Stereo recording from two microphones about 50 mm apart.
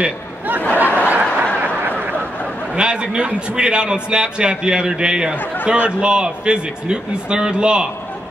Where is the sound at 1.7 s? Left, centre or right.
Right.